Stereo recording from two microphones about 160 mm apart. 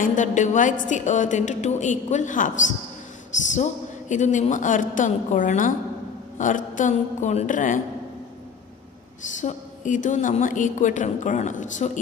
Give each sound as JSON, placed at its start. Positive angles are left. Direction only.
{"t": 0.0, "sound": "a woman's voice", "side_deg": 55}
{"t": 9.4, "sound": "a woman's voice", "side_deg": 50}